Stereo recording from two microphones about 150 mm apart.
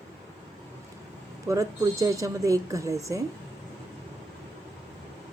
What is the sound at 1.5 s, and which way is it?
Speech, 20° right (ahead or behind).